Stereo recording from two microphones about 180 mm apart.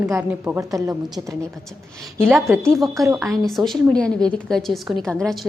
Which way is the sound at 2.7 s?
Centre (ahead or behind).